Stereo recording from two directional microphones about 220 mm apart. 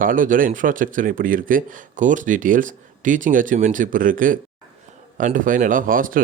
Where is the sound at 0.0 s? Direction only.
40° right (ahead or behind).